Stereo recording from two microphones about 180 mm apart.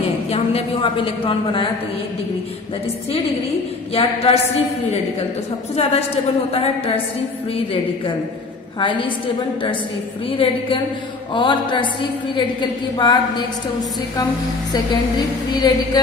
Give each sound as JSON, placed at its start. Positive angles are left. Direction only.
{"t": 0.3, "sound": "a woman's voice", "side_deg": 30}
{"t": 3.9, "sound": "a woman's voice", "side_deg": 30}
{"t": 5.8, "sound": "a woman's voice", "side_deg": 35}
{"t": 7.7, "sound": "a woman's voice", "side_deg": 30}
{"t": 10.3, "sound": "a woman's voice", "side_deg": 30}
{"t": 14.7, "sound": "a woman's voice", "side_deg": 20}